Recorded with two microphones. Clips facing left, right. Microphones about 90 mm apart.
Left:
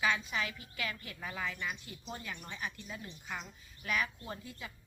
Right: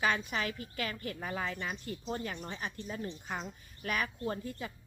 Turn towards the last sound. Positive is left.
turn(degrees=-40)  # may be behind; listen again after turning